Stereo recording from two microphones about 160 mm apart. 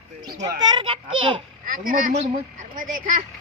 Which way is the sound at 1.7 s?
55° right (ahead or behind).